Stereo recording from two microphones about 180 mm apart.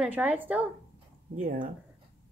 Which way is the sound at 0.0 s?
10° right (ahead or behind).